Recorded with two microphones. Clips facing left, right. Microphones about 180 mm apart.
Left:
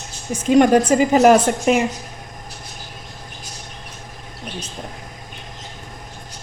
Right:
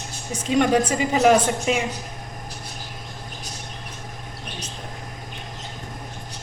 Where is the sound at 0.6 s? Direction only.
50° left (ahead or behind).